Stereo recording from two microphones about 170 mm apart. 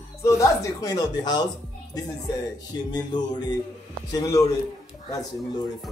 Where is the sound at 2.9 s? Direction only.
25° left (ahead or behind).